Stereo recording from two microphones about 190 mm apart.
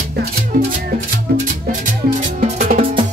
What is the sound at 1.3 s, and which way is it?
Music, 55° right (ahead or behind).